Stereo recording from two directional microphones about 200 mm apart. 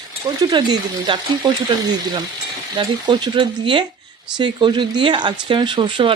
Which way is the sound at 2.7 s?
20° right (ahead or behind).